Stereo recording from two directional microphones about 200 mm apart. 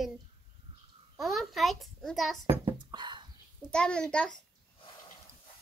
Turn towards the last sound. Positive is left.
turn(degrees=5)  # may be behind; listen again after turning